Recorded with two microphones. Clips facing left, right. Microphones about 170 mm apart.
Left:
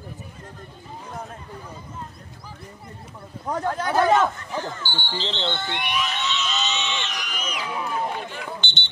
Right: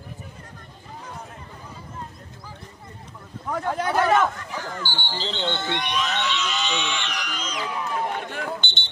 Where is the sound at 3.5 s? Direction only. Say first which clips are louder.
Left 1 dB; 40° left (ahead or behind).